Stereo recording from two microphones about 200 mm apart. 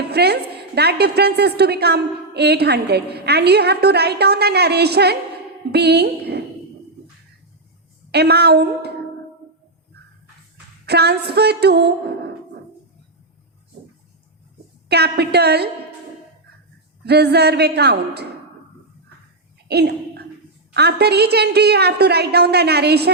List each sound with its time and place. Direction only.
0.0 s a woman's voice: 55° right (ahead or behind)
8.1 s a woman's voice: 55° right (ahead or behind)
10.8 s a woman's voice: 55° right (ahead or behind)
14.8 s a woman's voice: 55° right (ahead or behind)
17.1 s a woman's voice: 55° right (ahead or behind)
19.6 s a sound: 55° right (ahead or behind)
20.7 s a woman's voice: 55° right (ahead or behind)